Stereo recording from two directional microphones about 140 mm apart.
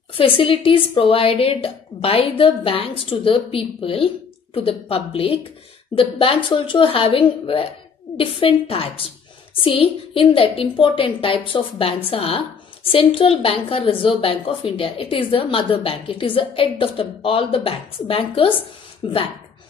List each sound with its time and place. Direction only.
0.1 s a woman's voice: 40° left (ahead or behind)